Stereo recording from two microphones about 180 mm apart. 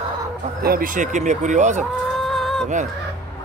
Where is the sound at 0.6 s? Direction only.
55° right (ahead or behind).